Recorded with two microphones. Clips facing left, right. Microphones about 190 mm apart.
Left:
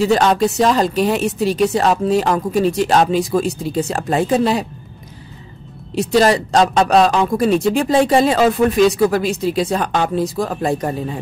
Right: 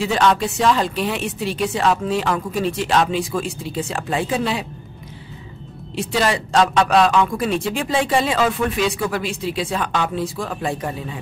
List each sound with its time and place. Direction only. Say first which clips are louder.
0.0 s speech: left 4 dB; 40° left (ahead or behind)
5.9 s speech: left 7 dB; 40° left (ahead or behind)